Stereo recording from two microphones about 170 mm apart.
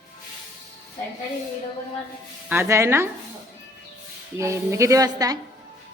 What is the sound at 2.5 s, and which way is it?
Speech, 15° right (ahead or behind).